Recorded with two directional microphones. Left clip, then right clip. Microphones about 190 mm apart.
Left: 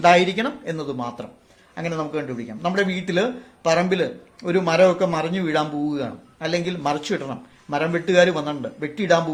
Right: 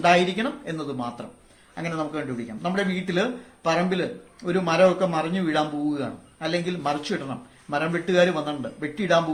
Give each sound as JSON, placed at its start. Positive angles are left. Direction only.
{"t": 0.0, "sound": "speech", "side_deg": 45}